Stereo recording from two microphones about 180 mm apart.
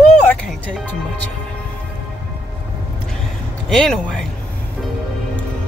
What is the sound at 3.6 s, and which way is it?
Speech, centre (ahead or behind).